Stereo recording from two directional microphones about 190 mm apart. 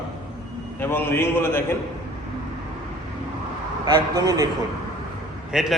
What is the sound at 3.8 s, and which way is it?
Speech, 20° right (ahead or behind).